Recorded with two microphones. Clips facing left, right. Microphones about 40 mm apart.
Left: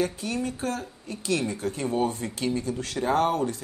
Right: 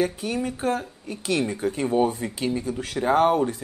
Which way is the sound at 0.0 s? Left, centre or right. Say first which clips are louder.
Right 3 dB; centre.